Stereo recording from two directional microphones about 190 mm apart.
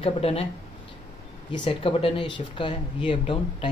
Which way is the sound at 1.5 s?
25° left (ahead or behind).